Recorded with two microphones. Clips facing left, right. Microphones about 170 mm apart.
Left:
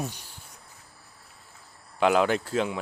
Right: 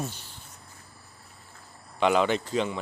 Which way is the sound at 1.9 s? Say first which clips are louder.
Left 1 dB; 5° left (ahead or behind).